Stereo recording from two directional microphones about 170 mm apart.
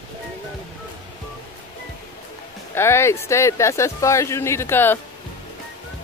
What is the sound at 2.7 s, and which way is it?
Speech, 15° left (ahead or behind).